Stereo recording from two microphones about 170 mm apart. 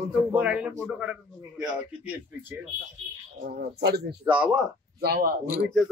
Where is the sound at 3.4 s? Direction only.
75° right (ahead or behind).